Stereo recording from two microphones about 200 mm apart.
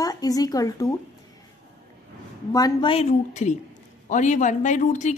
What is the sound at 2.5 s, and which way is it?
A woman's voice, 20° left (ahead or behind).